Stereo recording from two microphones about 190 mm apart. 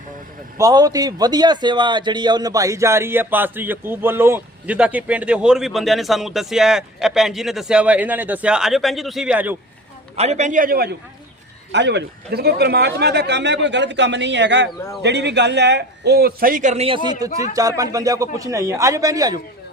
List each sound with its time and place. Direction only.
0.6 s a man's voice: 20° right (ahead or behind)
10.2 s a man's voice: 35° right (ahead or behind)
11.7 s a man's voice: 65° right (ahead or behind); by 19.4 s 20° right (ahead or behind)